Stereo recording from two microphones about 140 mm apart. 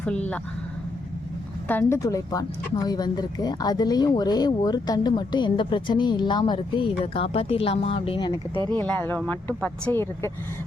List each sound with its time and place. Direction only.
1.6 s a woman's voice: 15° left (ahead or behind)
2.0 s speech: 25° left (ahead or behind); by 8.3 s 40° left (ahead or behind)
8.8 s speech: 15° left (ahead or behind)